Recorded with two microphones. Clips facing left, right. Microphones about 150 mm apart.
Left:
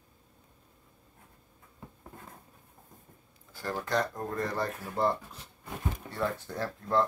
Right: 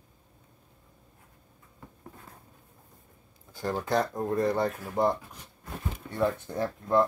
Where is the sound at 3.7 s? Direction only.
25° right (ahead or behind).